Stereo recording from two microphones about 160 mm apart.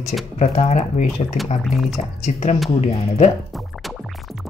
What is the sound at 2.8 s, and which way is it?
Speech, 45° left (ahead or behind).